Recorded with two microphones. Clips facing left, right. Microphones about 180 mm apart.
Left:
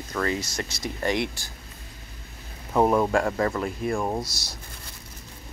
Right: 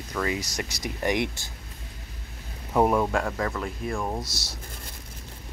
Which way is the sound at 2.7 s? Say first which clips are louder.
Left 2 dB; 5° right (ahead or behind).